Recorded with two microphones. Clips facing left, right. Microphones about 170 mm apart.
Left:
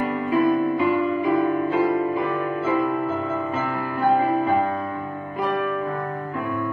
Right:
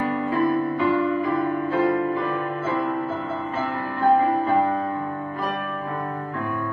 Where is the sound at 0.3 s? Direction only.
15° left (ahead or behind).